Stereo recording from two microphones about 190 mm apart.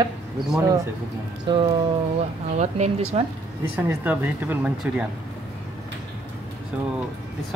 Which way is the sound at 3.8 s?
10° right (ahead or behind).